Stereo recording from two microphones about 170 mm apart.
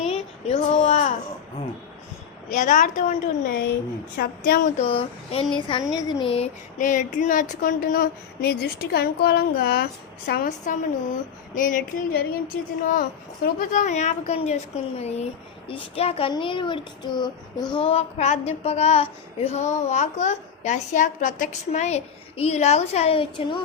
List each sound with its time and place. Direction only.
0.0 s a sound: 35° left (ahead or behind)
2.5 s speech: 50° left (ahead or behind)
4.2 s speech: 60° left (ahead or behind)
4.8 s a child's voice: 35° left (ahead or behind)
6.7 s a child's voice: 50° left (ahead or behind)